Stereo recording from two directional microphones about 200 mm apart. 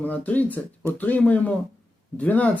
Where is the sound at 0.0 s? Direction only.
10° left (ahead or behind).